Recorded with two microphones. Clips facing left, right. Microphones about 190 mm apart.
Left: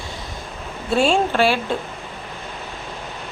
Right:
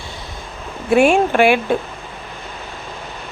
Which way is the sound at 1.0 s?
15° right (ahead or behind).